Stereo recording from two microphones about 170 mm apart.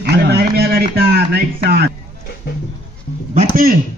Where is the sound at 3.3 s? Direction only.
55° right (ahead or behind).